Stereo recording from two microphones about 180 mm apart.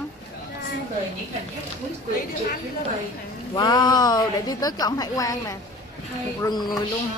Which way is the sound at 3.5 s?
20° left (ahead or behind).